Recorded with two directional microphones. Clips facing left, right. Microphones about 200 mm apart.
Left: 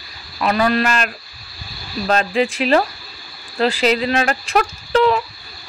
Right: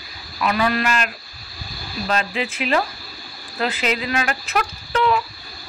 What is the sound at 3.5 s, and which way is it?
Speech, 30° left (ahead or behind).